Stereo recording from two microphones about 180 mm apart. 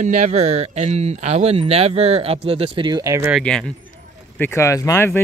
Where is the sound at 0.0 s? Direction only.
40° right (ahead or behind); by 3.3 s 15° right (ahead or behind).